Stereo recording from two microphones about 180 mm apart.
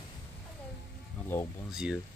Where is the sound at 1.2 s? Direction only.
10° left (ahead or behind).